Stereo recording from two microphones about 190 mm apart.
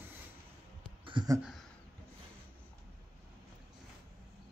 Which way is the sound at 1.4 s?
Centre (ahead or behind).